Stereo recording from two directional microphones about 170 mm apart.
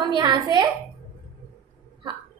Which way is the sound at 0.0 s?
25° right (ahead or behind).